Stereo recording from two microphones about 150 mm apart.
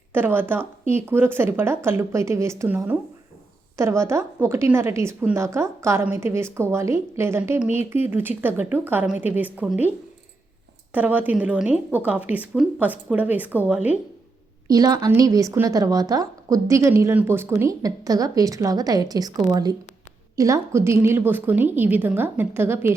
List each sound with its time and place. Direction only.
0.1 s a woman's voice: 15° right (ahead or behind)
10.9 s a woman's voice: 10° right (ahead or behind)
14.7 s a woman's voice: 25° right (ahead or behind)
20.3 s a woman's voice: 20° right (ahead or behind)